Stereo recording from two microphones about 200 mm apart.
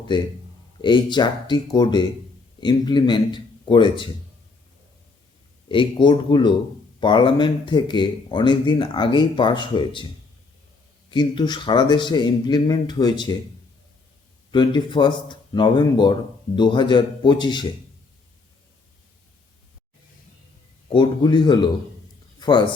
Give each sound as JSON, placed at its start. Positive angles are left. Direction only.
{"t": 0.1, "sound": "speech", "side_deg": 25}
{"t": 5.6, "sound": "speech", "side_deg": 25}
{"t": 11.1, "sound": "speech", "side_deg": 20}
{"t": 14.5, "sound": "speech", "side_deg": 25}
{"t": 20.9, "sound": "speech", "side_deg": 25}
{"t": 22.4, "sound": "a sound", "side_deg": 20}